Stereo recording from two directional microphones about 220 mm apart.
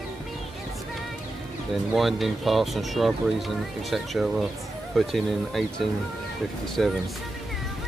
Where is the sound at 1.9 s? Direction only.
Centre (ahead or behind).